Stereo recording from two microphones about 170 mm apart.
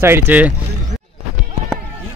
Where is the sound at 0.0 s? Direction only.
10° right (ahead or behind).